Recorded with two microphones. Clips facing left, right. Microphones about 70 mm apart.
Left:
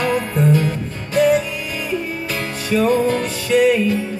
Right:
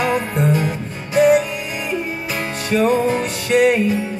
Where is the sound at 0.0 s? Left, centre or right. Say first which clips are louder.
Even; centre.